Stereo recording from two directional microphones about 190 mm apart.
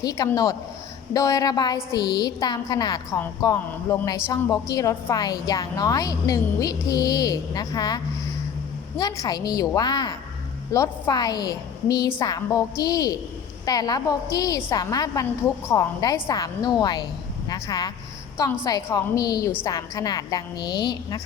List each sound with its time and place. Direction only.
0.0 s a woman's voice: 20° left (ahead or behind)